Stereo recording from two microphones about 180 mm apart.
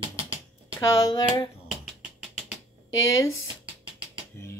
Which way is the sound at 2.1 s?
5° right (ahead or behind).